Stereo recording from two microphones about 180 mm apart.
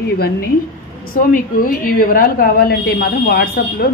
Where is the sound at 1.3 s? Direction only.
50° left (ahead or behind).